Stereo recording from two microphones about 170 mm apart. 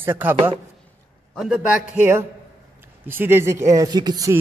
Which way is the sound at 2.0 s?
15° right (ahead or behind).